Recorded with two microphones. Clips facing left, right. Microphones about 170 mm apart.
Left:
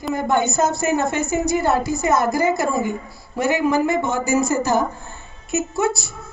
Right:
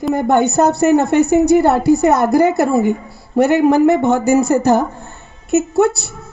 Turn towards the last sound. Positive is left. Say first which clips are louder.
# right 7 dB
turn(degrees=-65)  # may be behind; listen again after turning